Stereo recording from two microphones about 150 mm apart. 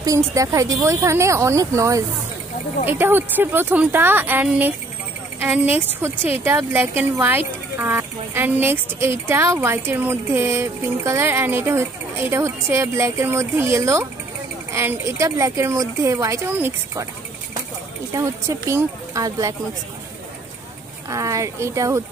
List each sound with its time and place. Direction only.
0.0 s speech: 20° right (ahead or behind)
18.1 s speech: 20° right (ahead or behind)
21.1 s speech: 20° right (ahead or behind)